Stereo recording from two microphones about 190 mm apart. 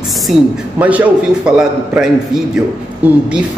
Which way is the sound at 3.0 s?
10° right (ahead or behind).